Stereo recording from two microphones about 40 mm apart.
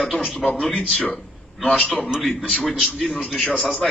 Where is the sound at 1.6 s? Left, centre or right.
Left.